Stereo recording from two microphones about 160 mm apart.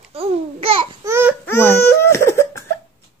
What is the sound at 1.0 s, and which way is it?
Babbling, 15° right (ahead or behind).